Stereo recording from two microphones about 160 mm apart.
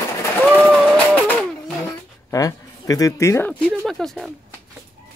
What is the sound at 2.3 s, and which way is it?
Speech, 20° left (ahead or behind).